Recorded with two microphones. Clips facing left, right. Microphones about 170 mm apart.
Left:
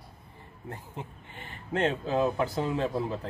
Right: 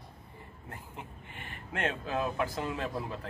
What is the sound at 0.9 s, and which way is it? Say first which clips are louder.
Speech: left 4 dB; 30° left (ahead or behind).